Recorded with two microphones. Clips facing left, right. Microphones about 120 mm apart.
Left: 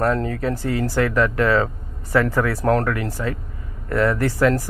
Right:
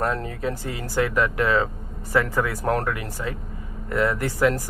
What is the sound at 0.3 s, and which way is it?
Speech, 20° right (ahead or behind).